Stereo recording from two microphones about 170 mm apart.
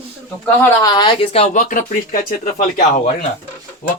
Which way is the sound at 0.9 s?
25° left (ahead or behind).